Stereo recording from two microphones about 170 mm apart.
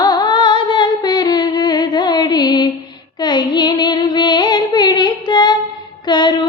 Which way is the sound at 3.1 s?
25° left (ahead or behind).